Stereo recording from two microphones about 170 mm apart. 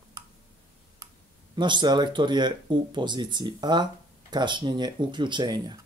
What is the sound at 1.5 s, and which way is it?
Speech, 25° right (ahead or behind).